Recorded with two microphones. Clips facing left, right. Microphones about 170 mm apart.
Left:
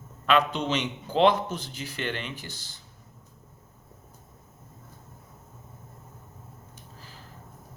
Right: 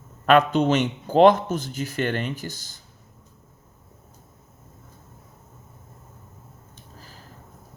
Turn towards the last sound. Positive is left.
turn(degrees=-45)  # may be behind; listen again after turning